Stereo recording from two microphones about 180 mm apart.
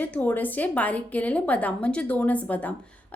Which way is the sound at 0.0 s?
10° left (ahead or behind).